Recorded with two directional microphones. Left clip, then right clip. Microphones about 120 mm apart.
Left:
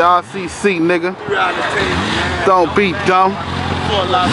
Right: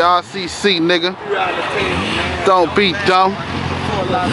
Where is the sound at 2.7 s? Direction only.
10° right (ahead or behind).